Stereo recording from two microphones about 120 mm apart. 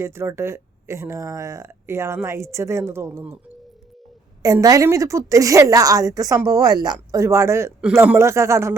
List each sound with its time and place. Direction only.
0.0 s speech: 20° right (ahead or behind)
4.4 s speech: 30° right (ahead or behind)